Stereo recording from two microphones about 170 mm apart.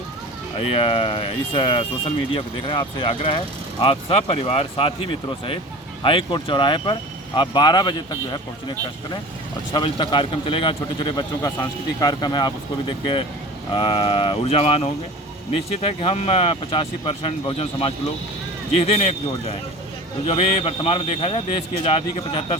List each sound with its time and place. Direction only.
0.5 s speech: 35° left (ahead or behind)
6.0 s speech: 30° left (ahead or behind)
13.7 s speech: 30° left (ahead or behind)